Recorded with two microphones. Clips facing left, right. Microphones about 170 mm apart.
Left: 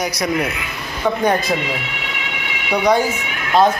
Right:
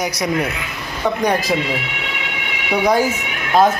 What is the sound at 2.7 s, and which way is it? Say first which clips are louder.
Speech: left 1 dB; 5° right (ahead or behind).